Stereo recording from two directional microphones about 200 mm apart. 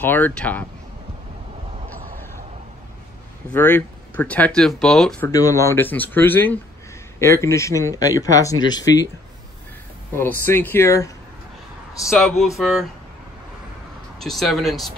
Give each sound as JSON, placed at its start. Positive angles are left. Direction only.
{"t": 0.0, "sound": "speech", "side_deg": 10}
{"t": 3.4, "sound": "speech", "side_deg": 10}
{"t": 5.3, "sound": "speech", "side_deg": 15}
{"t": 10.4, "sound": "speech", "side_deg": 10}
{"t": 12.0, "sound": "speech", "side_deg": 0}
{"t": 14.2, "sound": "speech", "side_deg": 0}